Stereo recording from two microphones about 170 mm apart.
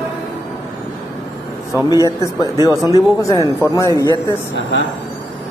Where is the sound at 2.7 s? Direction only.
20° right (ahead or behind).